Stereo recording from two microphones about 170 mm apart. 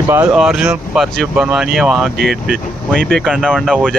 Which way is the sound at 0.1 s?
5° right (ahead or behind).